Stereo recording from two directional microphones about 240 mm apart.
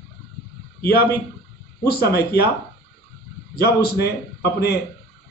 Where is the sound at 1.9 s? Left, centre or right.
Left.